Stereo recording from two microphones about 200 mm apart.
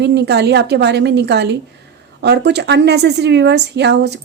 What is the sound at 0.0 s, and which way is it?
A woman's voice, 55° right (ahead or behind).